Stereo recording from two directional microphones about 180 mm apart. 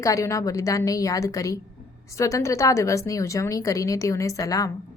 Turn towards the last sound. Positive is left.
turn(degrees=20)  # may be behind; listen again after turning